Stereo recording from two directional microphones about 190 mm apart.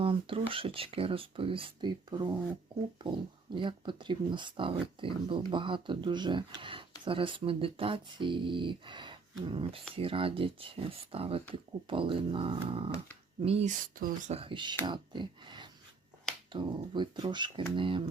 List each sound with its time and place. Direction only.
0.0 s speech: 30° right (ahead or behind)
13.9 s speech: 45° right (ahead or behind); by 18.0 s 25° right (ahead or behind)